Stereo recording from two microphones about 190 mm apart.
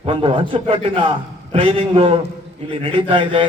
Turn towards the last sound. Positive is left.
turn(degrees=-25)  # may be behind; listen again after turning